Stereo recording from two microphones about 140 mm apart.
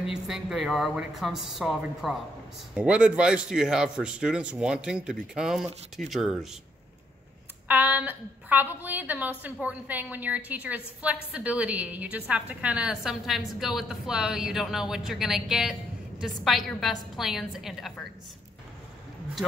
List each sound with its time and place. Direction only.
0.0 s a woman's voice: 5° right (ahead or behind)
7.6 s a woman's voice: 10° right (ahead or behind)